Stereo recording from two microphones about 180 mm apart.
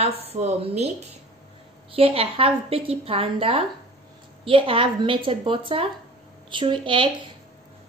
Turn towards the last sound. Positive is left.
turn(degrees=-30)  # may be behind; listen again after turning